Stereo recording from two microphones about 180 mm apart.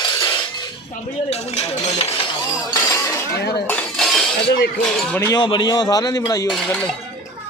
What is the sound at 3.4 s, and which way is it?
Speech, 65° left (ahead or behind).